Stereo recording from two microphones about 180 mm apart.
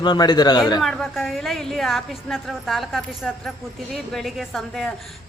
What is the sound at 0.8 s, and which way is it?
A woman's voice, centre (ahead or behind).